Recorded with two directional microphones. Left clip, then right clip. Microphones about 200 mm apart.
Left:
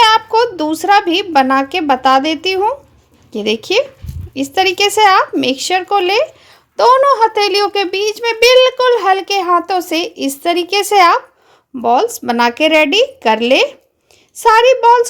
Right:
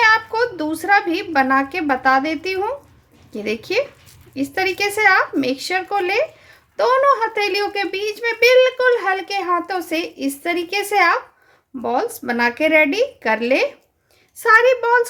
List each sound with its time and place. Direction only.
0.0 s a child's voice: 35° left (ahead or behind)